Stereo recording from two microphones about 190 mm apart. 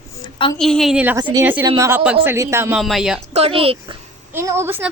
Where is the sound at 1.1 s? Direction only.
20° right (ahead or behind).